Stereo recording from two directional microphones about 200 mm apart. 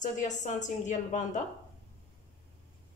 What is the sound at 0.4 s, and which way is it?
Speech, 35° left (ahead or behind).